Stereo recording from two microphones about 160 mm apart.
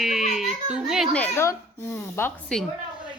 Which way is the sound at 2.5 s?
5° left (ahead or behind).